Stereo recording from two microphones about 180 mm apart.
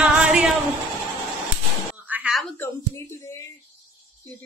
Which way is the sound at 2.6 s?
15° left (ahead or behind).